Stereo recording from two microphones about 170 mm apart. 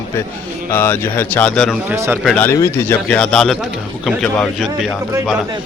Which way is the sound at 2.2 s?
5° left (ahead or behind).